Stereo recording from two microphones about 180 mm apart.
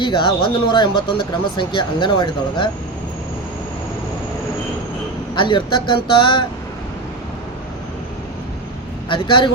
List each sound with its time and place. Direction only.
0.0 s speech: 25° left (ahead or behind)
5.3 s speech: 25° left (ahead or behind)
9.0 s speech: 25° left (ahead or behind)